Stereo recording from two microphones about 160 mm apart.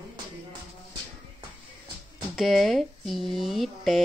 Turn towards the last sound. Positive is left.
turn(degrees=0)  # may be behind; listen again after turning